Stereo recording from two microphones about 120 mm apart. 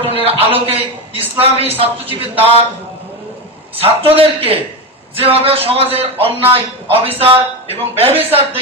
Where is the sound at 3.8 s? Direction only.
50° right (ahead or behind).